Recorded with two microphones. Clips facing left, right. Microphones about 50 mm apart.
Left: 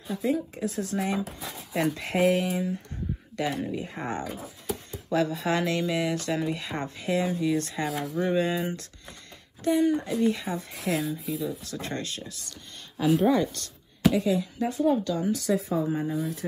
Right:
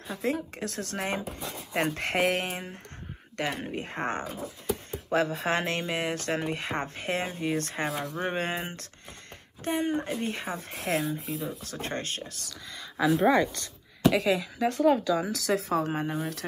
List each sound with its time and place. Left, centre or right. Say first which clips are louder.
0.1 s speech: left 3 dB; right
1.7 s speech: left 1 dB; right
7.9 s speech: left 2 dB; centre
8.2 s speech: left 7 dB; right
10.7 s speech: even; right
11.3 s speech: left 3 dB; right
14.1 s speech: even; right
16.0 s speech: left 2 dB; right